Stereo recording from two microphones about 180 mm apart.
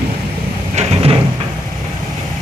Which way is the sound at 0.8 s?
35° right (ahead or behind).